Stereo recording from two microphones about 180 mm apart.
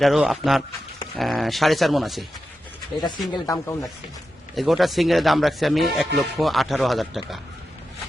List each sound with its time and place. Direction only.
0.0 s speech: centre (ahead or behind)
3.3 s speech: 20° left (ahead or behind)
4.5 s speech: centre (ahead or behind)